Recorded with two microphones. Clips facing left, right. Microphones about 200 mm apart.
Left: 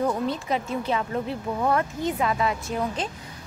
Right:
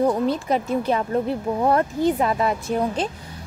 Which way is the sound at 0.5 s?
45° right (ahead or behind).